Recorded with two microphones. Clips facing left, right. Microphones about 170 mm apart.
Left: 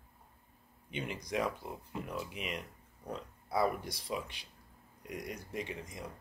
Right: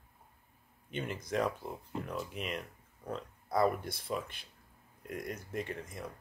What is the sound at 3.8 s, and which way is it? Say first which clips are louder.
Speech: right 1 dB; 55° right (ahead or behind).